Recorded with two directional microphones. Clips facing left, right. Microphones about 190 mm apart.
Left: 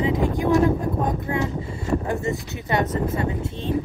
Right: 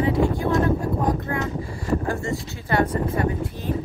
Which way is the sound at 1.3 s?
25° left (ahead or behind).